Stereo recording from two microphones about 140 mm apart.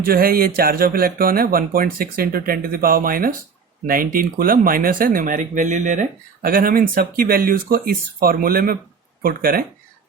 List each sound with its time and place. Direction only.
0.0 s speech: 90° right